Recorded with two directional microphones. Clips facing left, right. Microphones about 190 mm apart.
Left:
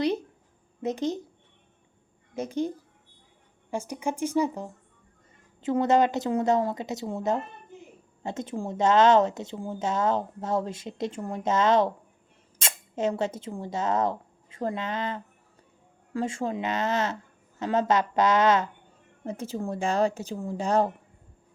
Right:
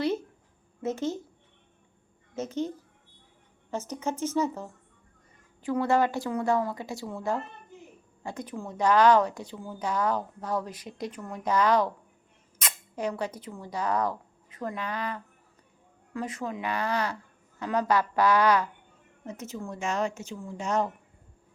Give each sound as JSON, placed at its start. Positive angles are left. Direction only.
{"t": 0.0, "sound": "a sound", "side_deg": 15}
{"t": 0.8, "sound": "speech", "side_deg": 15}
{"t": 2.3, "sound": "speech", "side_deg": 15}